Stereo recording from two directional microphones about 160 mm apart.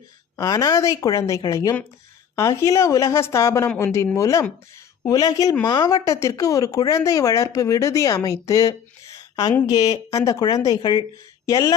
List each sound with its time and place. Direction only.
0.3 s a woman's voice: 20° left (ahead or behind)
9.1 s a sound: 25° left (ahead or behind)
9.6 s speech: 25° left (ahead or behind)